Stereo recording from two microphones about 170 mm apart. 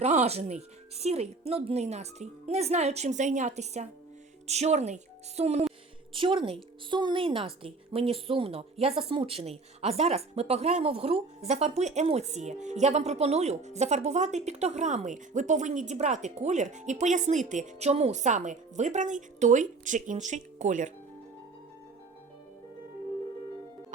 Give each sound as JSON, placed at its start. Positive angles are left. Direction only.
{"t": 0.0, "sound": "a woman's voice", "side_deg": -40}